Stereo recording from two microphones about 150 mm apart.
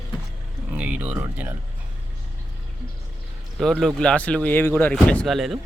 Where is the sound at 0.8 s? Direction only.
10° right (ahead or behind).